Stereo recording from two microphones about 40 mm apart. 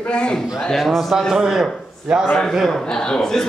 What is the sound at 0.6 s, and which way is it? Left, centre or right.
A man's voice, centre.